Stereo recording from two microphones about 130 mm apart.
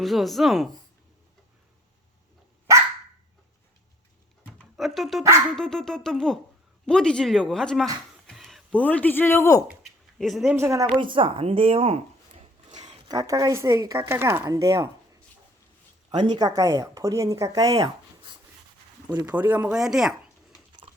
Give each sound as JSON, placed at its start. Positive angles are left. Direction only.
{"t": 0.0, "sound": "speech", "side_deg": 0}
{"t": 4.5, "sound": "a sound", "side_deg": 0}
{"t": 5.5, "sound": "speech", "side_deg": 5}
{"t": 8.3, "sound": "music", "side_deg": 0}
{"t": 8.8, "sound": "speech", "side_deg": 10}
{"t": 9.8, "sound": "a sound", "side_deg": 0}
{"t": 10.5, "sound": "speech", "side_deg": -20}
{"t": 11.0, "sound": "speech", "side_deg": -40}
{"t": 13.1, "sound": "speech", "side_deg": -25}
{"t": 16.2, "sound": "speech", "side_deg": -30}
{"t": 19.2, "sound": "speech", "side_deg": -10}
{"t": 20.8, "sound": "a sound", "side_deg": -45}